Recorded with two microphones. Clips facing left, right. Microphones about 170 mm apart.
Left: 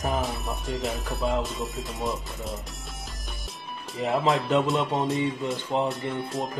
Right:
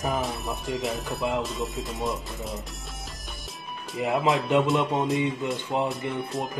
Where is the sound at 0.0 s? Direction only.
Centre (ahead or behind).